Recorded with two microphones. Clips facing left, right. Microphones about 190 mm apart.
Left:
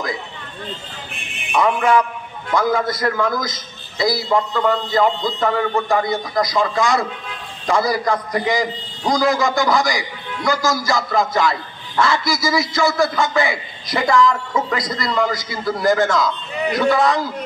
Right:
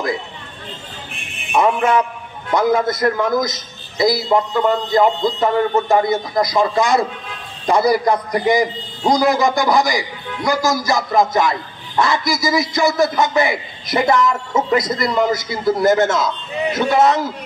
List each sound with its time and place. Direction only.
1.5 s a man's voice: 25° right (ahead or behind)